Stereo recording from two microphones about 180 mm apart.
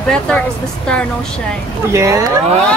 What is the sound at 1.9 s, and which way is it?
Speech, 15° right (ahead or behind).